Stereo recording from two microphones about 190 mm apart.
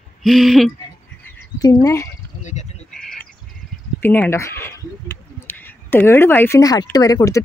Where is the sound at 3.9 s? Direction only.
10° left (ahead or behind).